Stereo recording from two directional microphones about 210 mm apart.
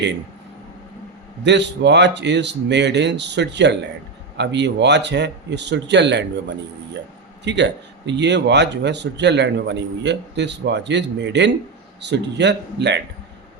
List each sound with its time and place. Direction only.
1.5 s speech: 55° right (ahead or behind)
7.4 s speech: 55° right (ahead or behind)